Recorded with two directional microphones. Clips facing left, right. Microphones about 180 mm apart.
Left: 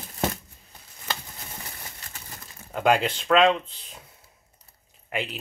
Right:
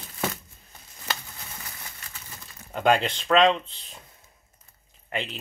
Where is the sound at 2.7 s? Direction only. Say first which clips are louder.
Even; 5° left (ahead or behind).